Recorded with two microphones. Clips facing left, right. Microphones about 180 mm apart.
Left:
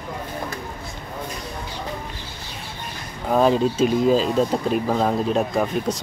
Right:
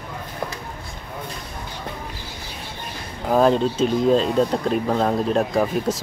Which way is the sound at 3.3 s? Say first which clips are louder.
Right 1 dB; centre (ahead or behind).